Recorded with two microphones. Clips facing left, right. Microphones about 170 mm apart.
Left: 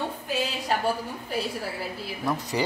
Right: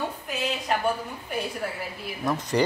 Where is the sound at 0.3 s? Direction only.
35° left (ahead or behind).